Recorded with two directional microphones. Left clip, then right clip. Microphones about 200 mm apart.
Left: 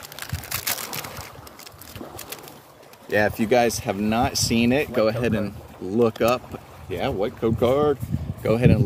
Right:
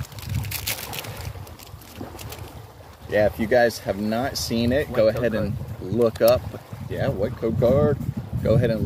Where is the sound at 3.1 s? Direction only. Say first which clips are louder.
Right 1 dB; 35° left (ahead or behind).